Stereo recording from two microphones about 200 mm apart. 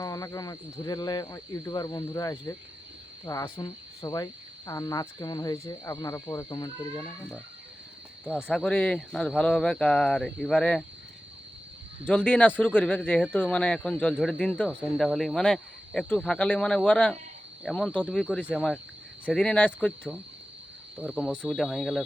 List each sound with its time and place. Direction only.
0.0 s cricket: 15° left (ahead or behind)
8.4 s speech: 5° left (ahead or behind)
12.0 s speech: 5° left (ahead or behind)
19.2 s cricket: 5° left (ahead or behind)
21.0 s speech: 5° right (ahead or behind)